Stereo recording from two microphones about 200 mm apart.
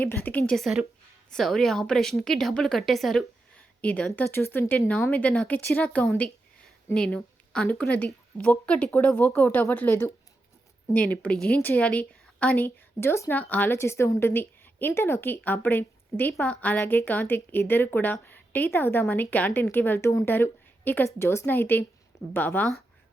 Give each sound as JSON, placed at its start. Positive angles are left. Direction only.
{"t": 0.0, "sound": "a woman's voice", "side_deg": 10}
{"t": 11.1, "sound": "a woman's voice", "side_deg": 5}